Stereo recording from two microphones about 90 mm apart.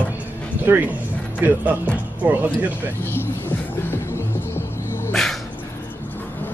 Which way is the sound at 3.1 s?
25° left (ahead or behind).